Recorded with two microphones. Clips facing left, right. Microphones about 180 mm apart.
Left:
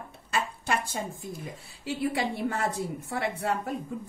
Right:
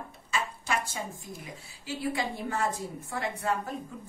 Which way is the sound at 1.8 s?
60° left (ahead or behind).